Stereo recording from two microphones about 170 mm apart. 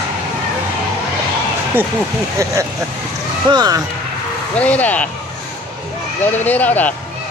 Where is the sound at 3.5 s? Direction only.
25° right (ahead or behind).